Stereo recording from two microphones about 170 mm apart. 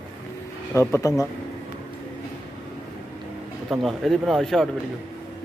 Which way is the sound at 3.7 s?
Centre (ahead or behind).